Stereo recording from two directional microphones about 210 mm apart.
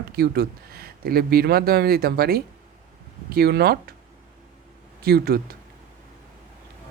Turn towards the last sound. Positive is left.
turn(degrees=-45)  # may be behind; listen again after turning